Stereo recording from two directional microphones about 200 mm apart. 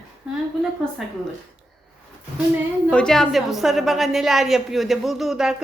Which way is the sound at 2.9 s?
5° left (ahead or behind).